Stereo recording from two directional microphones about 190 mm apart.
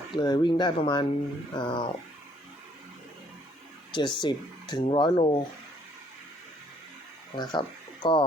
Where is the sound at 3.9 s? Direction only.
25° left (ahead or behind).